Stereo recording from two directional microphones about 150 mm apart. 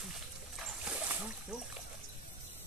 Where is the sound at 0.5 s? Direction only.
10° right (ahead or behind).